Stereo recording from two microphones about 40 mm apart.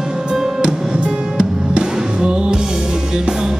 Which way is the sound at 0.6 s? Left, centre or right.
Right.